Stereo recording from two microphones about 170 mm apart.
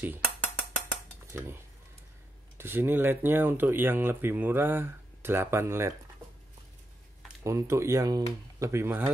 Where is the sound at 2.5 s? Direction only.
10° right (ahead or behind).